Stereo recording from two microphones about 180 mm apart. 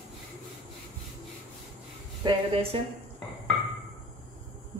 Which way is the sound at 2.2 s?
30° right (ahead or behind).